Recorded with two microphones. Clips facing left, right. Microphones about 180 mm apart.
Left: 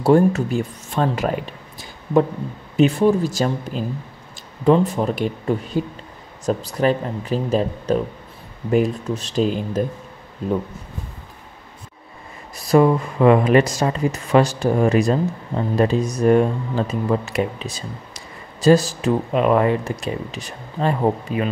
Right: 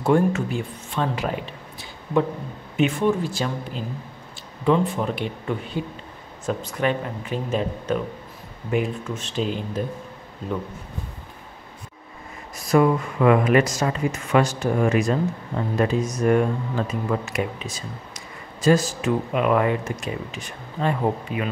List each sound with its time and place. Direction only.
0.0 s speech: 40° left (ahead or behind)
2.8 s speech: 35° left (ahead or behind)
12.6 s speech: 30° left (ahead or behind)
18.6 s speech: 35° left (ahead or behind)